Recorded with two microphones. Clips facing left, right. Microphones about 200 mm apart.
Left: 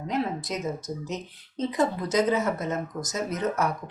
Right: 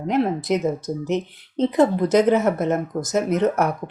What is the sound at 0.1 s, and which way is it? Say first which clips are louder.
Speech: right 9 dB; 65° right (ahead or behind).